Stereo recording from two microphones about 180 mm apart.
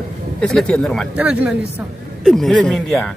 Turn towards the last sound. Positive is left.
turn(degrees=0)  # may be behind; listen again after turning